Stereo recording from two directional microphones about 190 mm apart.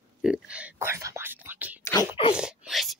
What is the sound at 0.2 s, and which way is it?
Speech, 5° right (ahead or behind).